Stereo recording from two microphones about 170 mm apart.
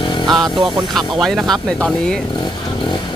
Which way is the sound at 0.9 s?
Centre (ahead or behind).